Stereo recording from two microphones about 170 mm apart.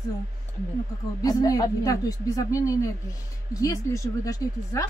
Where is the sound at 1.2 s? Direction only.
20° left (ahead or behind).